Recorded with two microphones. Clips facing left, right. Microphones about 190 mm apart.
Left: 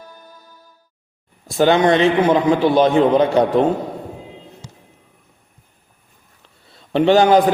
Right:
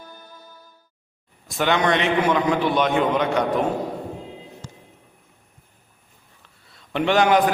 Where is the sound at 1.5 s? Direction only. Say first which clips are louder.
Left 7 dB; 30° left (ahead or behind).